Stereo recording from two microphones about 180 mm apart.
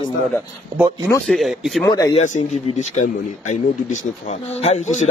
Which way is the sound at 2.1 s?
40° left (ahead or behind).